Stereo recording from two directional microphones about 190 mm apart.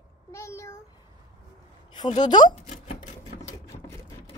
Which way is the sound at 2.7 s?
40° left (ahead or behind).